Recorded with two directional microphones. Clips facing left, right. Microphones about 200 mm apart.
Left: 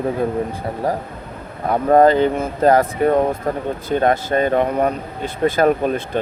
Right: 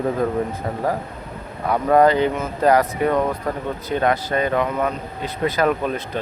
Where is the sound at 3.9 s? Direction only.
45° left (ahead or behind).